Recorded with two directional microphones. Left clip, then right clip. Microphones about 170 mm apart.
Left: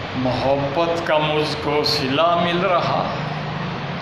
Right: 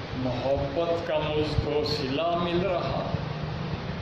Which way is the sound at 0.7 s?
20° right (ahead or behind).